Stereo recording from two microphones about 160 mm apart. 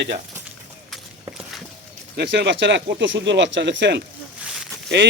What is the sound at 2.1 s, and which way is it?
Speech, 90° right.